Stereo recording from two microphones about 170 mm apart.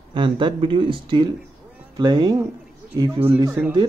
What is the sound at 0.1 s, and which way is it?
Speech, 30° right (ahead or behind).